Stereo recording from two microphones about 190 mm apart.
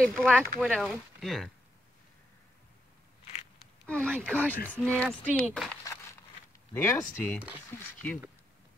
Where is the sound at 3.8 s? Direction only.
5° left (ahead or behind).